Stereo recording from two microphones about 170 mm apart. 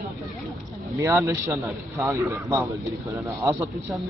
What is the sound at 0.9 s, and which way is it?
A man's voice, 20° right (ahead or behind).